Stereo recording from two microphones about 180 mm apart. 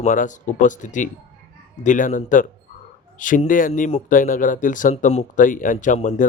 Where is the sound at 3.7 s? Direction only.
35° left (ahead or behind).